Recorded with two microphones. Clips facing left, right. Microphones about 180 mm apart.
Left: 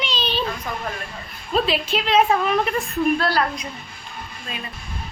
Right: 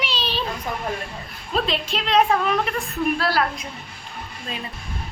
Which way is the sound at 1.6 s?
5° left (ahead or behind).